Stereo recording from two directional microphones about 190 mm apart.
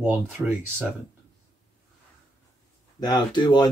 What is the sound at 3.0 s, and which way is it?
Speech, 20° left (ahead or behind).